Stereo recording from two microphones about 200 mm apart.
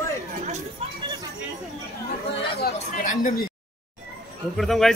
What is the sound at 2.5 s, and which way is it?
Speech, 45° left (ahead or behind).